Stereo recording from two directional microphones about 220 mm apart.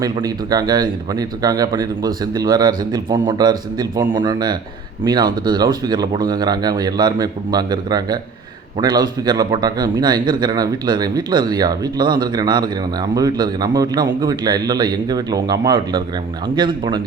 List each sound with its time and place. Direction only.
0.0 s a man's voice: 15° right (ahead or behind)